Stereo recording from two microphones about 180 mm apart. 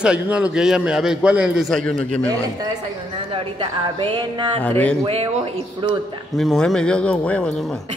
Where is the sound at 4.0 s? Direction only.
25° right (ahead or behind).